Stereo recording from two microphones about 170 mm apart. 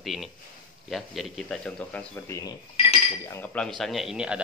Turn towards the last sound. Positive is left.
turn(degrees=-5)  # may be behind; listen again after turning